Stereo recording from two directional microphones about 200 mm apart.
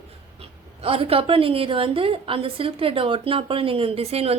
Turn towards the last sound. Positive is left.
turn(degrees=-30)  # may be behind; listen again after turning